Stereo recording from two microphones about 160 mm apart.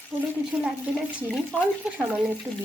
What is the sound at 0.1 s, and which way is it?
Speech, 20° right (ahead or behind).